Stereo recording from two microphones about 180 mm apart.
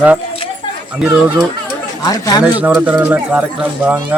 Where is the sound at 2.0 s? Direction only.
20° left (ahead or behind).